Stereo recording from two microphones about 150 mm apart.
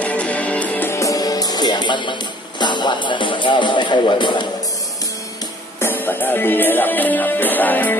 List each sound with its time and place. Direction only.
0.0 s music: 10° left (ahead or behind); by 4.5 s 30° left (ahead or behind)
5.8 s music: 15° left (ahead or behind)